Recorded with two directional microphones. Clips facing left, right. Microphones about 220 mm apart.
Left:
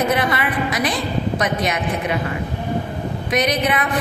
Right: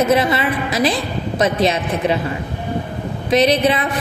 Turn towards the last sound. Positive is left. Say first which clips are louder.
# right 5 dB
turn(degrees=-25)  # may be behind; listen again after turning